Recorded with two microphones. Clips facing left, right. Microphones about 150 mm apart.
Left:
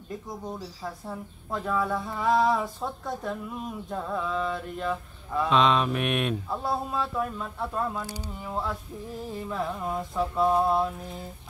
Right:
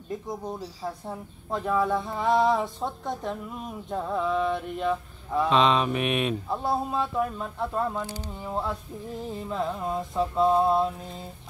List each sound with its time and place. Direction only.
0.3 s speech: 20° right (ahead or behind)
5.5 s mantra: centre (ahead or behind)
6.6 s speech: 20° right (ahead or behind)